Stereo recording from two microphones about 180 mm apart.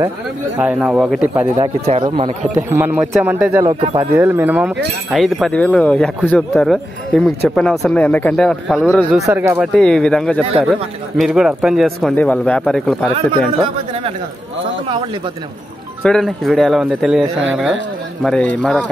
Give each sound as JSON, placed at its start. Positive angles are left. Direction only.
{"t": 0.6, "sound": "speech", "side_deg": -5}
{"t": 1.6, "sound": "speech", "side_deg": -30}
{"t": 2.7, "sound": "speech", "side_deg": -10}
{"t": 3.8, "sound": "speech", "side_deg": -30}
{"t": 4.2, "sound": "speech", "side_deg": -10}
{"t": 9.2, "sound": "speech", "side_deg": -15}
{"t": 9.8, "sound": "speech", "side_deg": 5}
{"t": 16.0, "sound": "speech", "side_deg": 5}
{"t": 18.2, "sound": "speech", "side_deg": 5}